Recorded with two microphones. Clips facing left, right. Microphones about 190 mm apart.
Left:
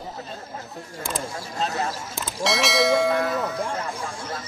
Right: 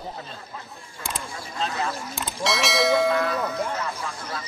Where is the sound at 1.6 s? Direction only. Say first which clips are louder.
Left 1 dB; 45° left (ahead or behind).